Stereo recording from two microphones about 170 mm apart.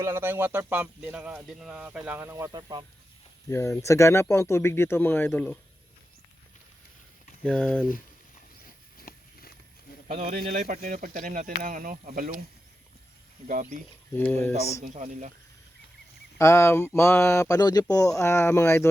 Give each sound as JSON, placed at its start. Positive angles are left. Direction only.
{"t": 0.0, "sound": "speech", "side_deg": -15}
{"t": 3.5, "sound": "speech", "side_deg": 15}
{"t": 7.4, "sound": "speech", "side_deg": 5}
{"t": 9.0, "sound": "a sound", "side_deg": 60}
{"t": 10.1, "sound": "speech", "side_deg": -45}
{"t": 13.5, "sound": "speech", "side_deg": -50}
{"t": 14.1, "sound": "speech", "side_deg": 10}
{"t": 14.9, "sound": "speech", "side_deg": -45}
{"t": 16.4, "sound": "speech", "side_deg": 15}